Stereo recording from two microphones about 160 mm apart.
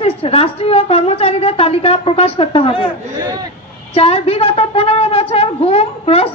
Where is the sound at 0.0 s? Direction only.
35° left (ahead or behind).